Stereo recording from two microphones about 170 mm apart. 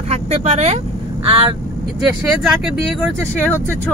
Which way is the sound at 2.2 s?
5° right (ahead or behind).